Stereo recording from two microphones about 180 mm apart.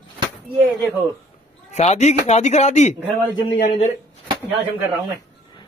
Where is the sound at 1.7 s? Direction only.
40° left (ahead or behind).